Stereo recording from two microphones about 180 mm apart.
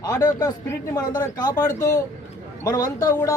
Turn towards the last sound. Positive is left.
turn(degrees=20)  # may be behind; listen again after turning